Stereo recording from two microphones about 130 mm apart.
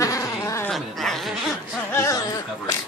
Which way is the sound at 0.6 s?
Centre (ahead or behind).